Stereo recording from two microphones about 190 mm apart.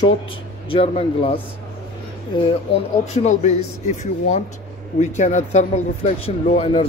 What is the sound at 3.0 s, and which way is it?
Speech, 35° left (ahead or behind).